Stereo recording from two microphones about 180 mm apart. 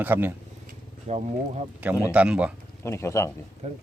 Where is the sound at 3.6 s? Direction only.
40° right (ahead or behind).